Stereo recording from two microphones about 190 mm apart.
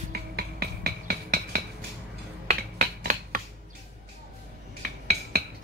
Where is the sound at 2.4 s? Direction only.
55° right (ahead or behind).